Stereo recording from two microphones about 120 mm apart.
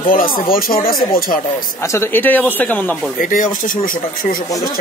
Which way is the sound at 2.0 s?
15° left (ahead or behind).